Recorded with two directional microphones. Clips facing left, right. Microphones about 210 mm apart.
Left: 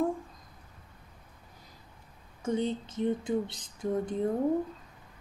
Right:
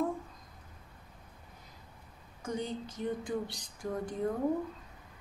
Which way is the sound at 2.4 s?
25° left (ahead or behind).